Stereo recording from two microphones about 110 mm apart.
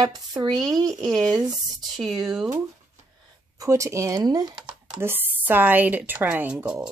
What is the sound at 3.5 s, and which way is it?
Speech, 30° right (ahead or behind).